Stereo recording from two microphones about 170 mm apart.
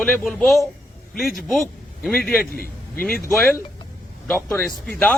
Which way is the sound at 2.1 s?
5° left (ahead or behind).